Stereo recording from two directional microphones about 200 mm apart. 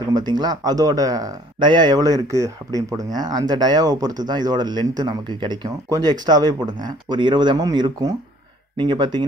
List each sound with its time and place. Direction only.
0.1 s speech: 20° right (ahead or behind)